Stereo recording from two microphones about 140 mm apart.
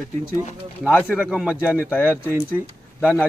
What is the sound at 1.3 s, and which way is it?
Speech, 5° right (ahead or behind).